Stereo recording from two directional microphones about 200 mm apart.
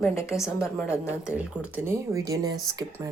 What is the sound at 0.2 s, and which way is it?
Cutlery, 15° left (ahead or behind).